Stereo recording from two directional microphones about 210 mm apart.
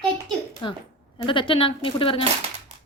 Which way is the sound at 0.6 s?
20° left (ahead or behind).